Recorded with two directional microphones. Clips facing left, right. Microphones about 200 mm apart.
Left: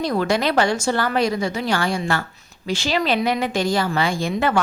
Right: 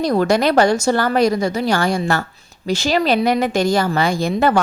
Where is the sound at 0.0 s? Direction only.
40° right (ahead or behind).